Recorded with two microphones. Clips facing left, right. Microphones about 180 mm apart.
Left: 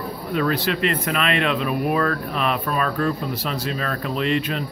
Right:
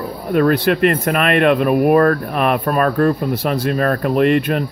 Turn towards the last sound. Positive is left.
turn(degrees=-55)  # may be behind; listen again after turning